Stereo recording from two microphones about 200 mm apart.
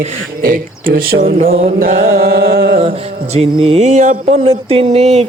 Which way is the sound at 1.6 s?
40° right (ahead or behind).